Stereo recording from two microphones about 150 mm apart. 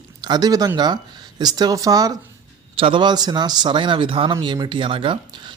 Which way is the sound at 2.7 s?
35° right (ahead or behind).